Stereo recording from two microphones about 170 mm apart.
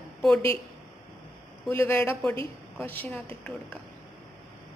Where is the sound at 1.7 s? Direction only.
15° left (ahead or behind).